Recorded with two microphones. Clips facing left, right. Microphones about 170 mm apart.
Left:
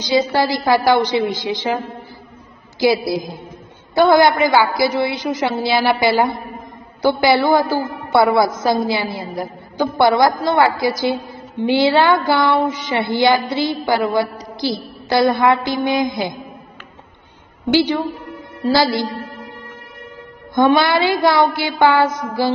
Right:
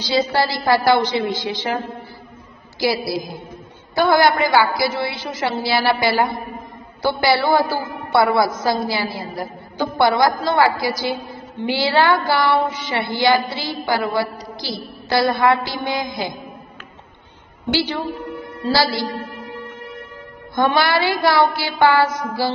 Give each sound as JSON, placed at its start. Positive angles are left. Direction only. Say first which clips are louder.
{"t": 0.3, "sound": "a woman's voice", "louder": "left 2 dB", "side_deg": 15}
{"t": 2.8, "sound": "a woman's voice", "louder": "left 4 dB", "side_deg": 20}
{"t": 17.7, "sound": "a woman's voice", "louder": "left 6 dB", "side_deg": 20}
{"t": 20.5, "sound": "a woman's voice", "louder": "left 4 dB", "side_deg": 20}